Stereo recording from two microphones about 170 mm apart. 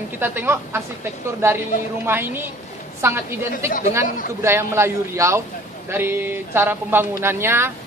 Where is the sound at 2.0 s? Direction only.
15° right (ahead or behind).